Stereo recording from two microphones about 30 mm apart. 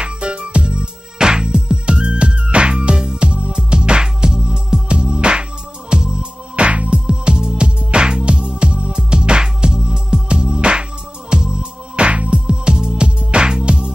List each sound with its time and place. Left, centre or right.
0.0 s music: right
6.6 s music: right
7.1 s music: right
11.3 s music: right
12.0 s music: right
12.9 s music: right